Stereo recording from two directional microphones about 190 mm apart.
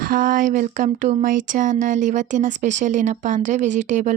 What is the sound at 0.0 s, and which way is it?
Speech, 45° right (ahead or behind).